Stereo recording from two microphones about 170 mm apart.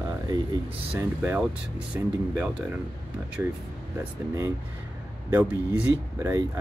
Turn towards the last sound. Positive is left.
turn(degrees=-10)  # may be behind; listen again after turning